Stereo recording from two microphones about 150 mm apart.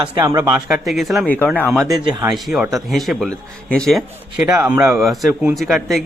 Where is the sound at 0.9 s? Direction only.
Centre (ahead or behind).